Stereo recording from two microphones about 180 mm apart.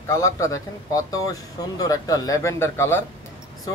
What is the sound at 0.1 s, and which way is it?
Speech, 15° left (ahead or behind).